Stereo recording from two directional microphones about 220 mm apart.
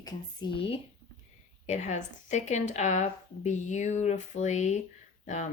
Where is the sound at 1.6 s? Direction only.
30° left (ahead or behind).